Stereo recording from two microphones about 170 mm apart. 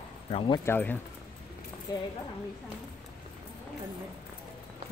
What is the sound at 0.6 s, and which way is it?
Speech, 10° left (ahead or behind).